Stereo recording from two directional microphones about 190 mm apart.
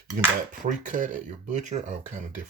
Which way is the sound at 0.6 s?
45° right (ahead or behind).